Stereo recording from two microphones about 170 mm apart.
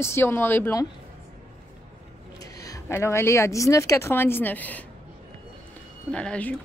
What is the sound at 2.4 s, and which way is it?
A woman's voice, 20° left (ahead or behind).